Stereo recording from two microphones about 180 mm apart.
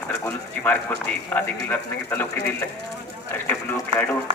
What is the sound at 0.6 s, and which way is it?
Speech, 10° left (ahead or behind).